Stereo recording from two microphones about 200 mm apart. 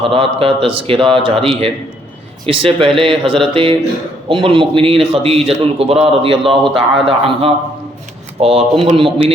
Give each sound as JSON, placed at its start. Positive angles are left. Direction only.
{"t": 0.0, "sound": "a man's voice", "side_deg": -25}